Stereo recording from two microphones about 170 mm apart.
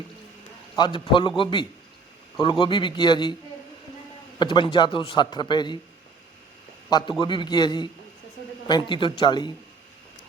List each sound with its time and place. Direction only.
0.8 s a man's voice: 30° left (ahead or behind)
4.4 s a man's voice: 30° left (ahead or behind)
7.2 s a man's voice: 30° left (ahead or behind)